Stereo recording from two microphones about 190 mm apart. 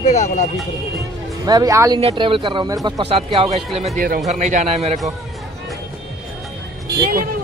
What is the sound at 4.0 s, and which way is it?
Speech, 45° right (ahead or behind).